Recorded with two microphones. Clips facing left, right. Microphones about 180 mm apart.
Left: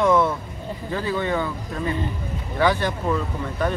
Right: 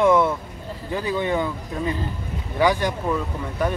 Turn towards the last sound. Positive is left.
turn(degrees=-10)  # may be behind; listen again after turning